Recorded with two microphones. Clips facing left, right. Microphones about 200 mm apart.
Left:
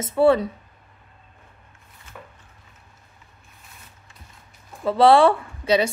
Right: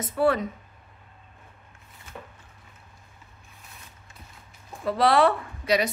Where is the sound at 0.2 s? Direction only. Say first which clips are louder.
Left 6 dB; 25° left (ahead or behind).